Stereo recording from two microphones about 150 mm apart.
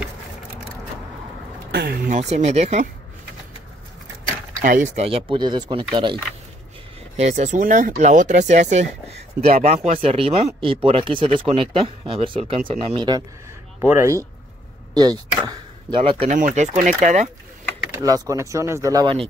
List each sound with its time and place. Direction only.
1.7 s speech: 90° right
2.1 s speech: 45° right (ahead or behind)
4.6 s speech: 60° right (ahead or behind)
5.0 s speech: 35° right (ahead or behind)
7.2 s speech: 50° right (ahead or behind)
10.0 s speech: 40° right (ahead or behind)
13.7 s speech: 15° right (ahead or behind)
16.0 s speech: 40° right (ahead or behind)
16.3 s speech: 60° right (ahead or behind)
17.9 s speech: 25° right (ahead or behind)